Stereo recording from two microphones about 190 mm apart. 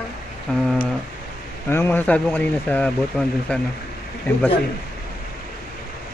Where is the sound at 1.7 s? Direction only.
10° left (ahead or behind).